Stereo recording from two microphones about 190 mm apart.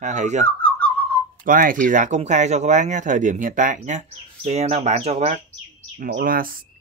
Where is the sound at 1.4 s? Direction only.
45° right (ahead or behind).